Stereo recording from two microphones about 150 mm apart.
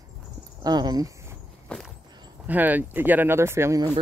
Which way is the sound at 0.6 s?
25° right (ahead or behind).